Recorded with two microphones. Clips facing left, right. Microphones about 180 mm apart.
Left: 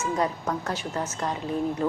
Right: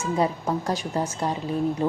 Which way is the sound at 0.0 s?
10° right (ahead or behind).